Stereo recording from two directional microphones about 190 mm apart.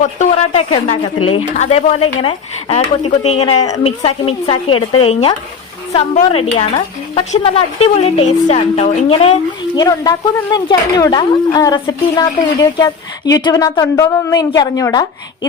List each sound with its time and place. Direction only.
0.0 s speech: 40° left (ahead or behind)
6.2 s speech: 30° left (ahead or behind)
9.7 s speech: 20° left (ahead or behind)